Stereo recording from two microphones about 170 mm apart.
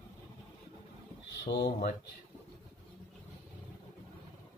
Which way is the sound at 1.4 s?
70° left (ahead or behind).